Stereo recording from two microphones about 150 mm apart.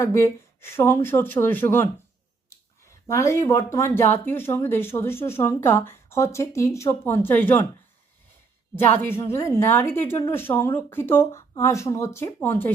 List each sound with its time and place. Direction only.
0.0 s speech: 15° left (ahead or behind)
8.7 s speech: 15° left (ahead or behind)